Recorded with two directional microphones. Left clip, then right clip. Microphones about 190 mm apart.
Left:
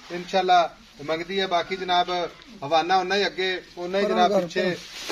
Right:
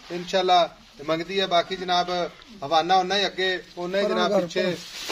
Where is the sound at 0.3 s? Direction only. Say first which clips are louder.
Even; 55° right (ahead or behind).